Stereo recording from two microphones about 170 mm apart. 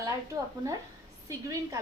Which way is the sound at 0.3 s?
20° right (ahead or behind).